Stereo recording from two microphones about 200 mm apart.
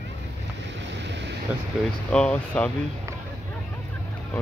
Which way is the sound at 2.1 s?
5° left (ahead or behind).